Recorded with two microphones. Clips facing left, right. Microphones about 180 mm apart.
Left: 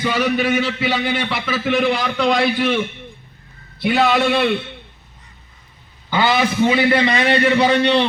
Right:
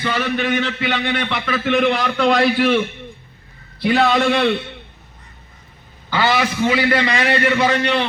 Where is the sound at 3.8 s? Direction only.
5° left (ahead or behind).